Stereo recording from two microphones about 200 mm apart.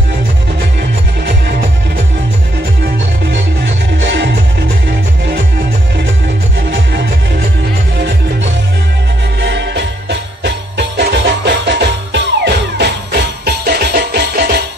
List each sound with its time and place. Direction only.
3.3 s music: 60° right (ahead or behind)
6.7 s music: 55° right (ahead or behind)
9.4 s music: 60° right (ahead or behind)